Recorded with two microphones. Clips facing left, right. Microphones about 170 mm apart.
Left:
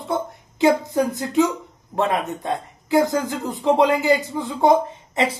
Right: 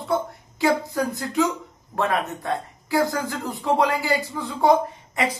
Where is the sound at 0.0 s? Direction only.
20° left (ahead or behind).